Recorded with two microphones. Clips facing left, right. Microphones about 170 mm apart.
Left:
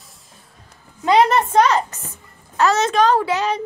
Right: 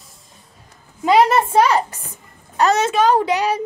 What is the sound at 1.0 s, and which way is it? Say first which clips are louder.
A woman's voice: right 1 dB; 5° right (ahead or behind).